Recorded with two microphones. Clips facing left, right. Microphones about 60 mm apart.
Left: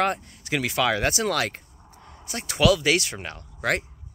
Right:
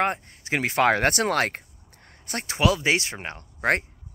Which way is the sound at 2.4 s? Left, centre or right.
Right.